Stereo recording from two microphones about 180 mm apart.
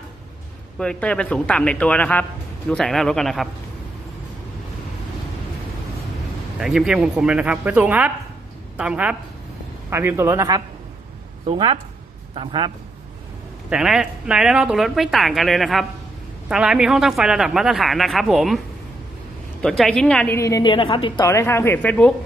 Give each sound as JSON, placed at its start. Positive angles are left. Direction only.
{"t": 0.7, "sound": "a man's voice", "side_deg": 5}
{"t": 6.6, "sound": "speech", "side_deg": -5}
{"t": 11.4, "sound": "a man's voice", "side_deg": -30}
{"t": 13.7, "sound": "speech", "side_deg": -5}
{"t": 19.8, "sound": "a man's voice", "side_deg": 5}
{"t": 21.3, "sound": "a man's voice", "side_deg": 15}